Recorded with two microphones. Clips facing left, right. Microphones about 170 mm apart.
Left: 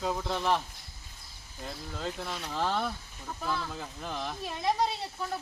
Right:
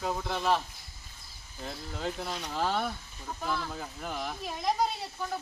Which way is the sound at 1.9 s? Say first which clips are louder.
Right 2 dB; 10° right (ahead or behind).